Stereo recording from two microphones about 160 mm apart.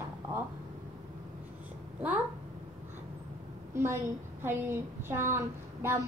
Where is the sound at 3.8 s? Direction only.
15° right (ahead or behind).